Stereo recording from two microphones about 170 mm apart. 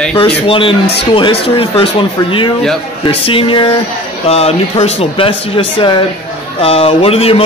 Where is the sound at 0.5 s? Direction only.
30° left (ahead or behind).